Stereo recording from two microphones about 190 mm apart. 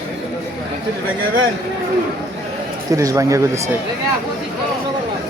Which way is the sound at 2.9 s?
15° right (ahead or behind).